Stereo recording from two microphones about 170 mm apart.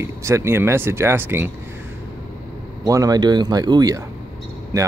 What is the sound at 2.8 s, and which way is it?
Speech, 20° right (ahead or behind).